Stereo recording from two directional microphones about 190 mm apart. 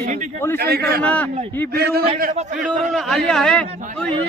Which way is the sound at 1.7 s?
55° right (ahead or behind).